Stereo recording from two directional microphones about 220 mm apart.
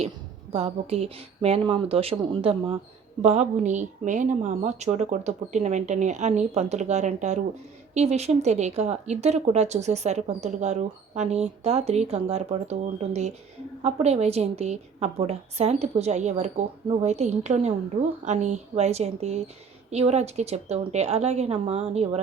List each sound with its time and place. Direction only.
0.5 s a woman's voice: 30° right (ahead or behind)